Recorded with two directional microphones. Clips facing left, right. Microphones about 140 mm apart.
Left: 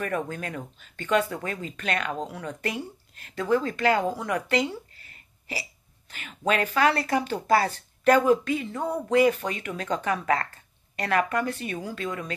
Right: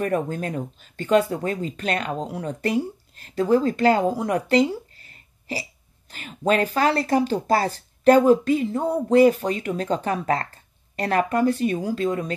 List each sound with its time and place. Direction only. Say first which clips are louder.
0.3 s speech: right 6 dB; 35° right (ahead or behind)